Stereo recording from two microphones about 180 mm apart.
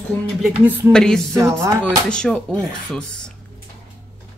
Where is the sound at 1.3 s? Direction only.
15° right (ahead or behind).